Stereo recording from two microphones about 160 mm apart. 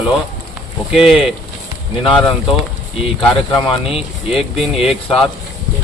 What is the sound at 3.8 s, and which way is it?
Speech, 35° left (ahead or behind).